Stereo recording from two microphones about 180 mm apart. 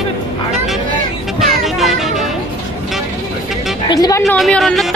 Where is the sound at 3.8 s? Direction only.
20° left (ahead or behind).